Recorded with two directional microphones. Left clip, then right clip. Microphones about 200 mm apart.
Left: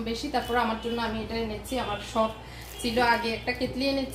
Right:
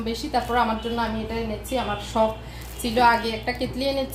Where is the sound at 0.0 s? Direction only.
30° right (ahead or behind).